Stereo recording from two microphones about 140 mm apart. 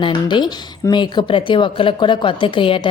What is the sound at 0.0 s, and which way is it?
Speech, 35° left (ahead or behind).